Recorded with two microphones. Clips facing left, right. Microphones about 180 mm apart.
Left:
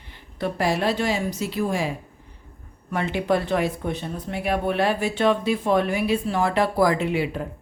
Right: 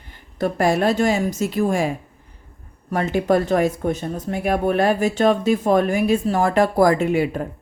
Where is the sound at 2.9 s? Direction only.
40° right (ahead or behind).